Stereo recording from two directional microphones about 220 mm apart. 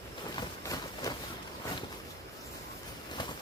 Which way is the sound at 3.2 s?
20° left (ahead or behind).